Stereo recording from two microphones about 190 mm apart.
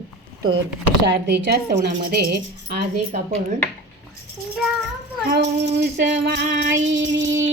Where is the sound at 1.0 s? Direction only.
65° right (ahead or behind).